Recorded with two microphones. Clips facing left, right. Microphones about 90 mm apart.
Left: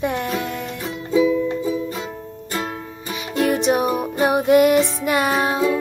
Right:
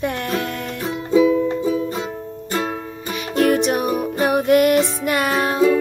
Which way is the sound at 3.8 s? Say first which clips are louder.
Even; 20° left (ahead or behind).